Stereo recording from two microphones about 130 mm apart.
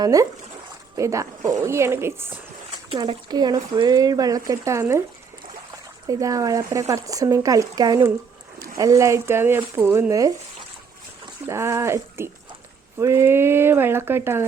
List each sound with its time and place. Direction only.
0.0 s speech: 30° right (ahead or behind)
2.9 s speech: 40° right (ahead or behind)
11.4 s speech: 20° right (ahead or behind)